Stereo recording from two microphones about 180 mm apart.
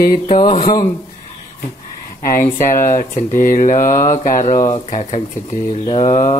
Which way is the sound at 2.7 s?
50° left (ahead or behind).